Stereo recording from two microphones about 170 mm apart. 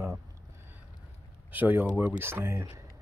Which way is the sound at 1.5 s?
10° right (ahead or behind).